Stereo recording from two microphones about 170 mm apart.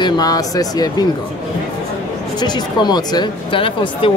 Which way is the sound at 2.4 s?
25° left (ahead or behind).